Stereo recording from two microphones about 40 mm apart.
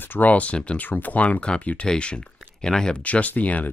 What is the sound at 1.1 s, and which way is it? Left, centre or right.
Speech, left.